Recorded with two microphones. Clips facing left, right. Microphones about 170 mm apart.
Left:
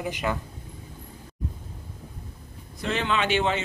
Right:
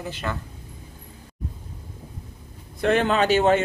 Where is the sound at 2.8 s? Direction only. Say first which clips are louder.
Right 6 dB; 50° right (ahead or behind).